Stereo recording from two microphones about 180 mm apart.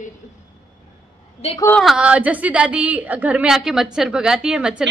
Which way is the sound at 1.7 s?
5° right (ahead or behind).